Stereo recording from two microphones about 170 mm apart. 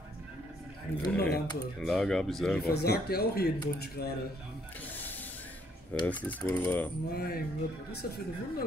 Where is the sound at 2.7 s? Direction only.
70° left (ahead or behind).